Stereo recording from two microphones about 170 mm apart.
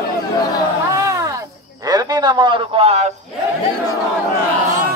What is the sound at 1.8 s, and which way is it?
A man's voice, 20° right (ahead or behind).